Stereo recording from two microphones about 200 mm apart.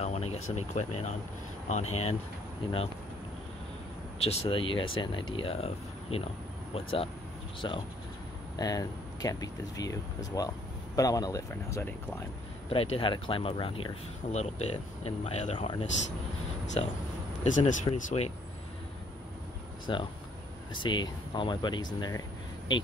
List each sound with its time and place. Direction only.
0.0 s vehicle: 30° left (ahead or behind)
0.6 s speech: 35° left (ahead or behind)
4.2 s speech: 30° left (ahead or behind); by 12.3 s 15° left (ahead or behind)
12.6 s speech: 30° left (ahead or behind)
17.4 s speech: 40° left (ahead or behind)
19.9 s speech: 25° left (ahead or behind)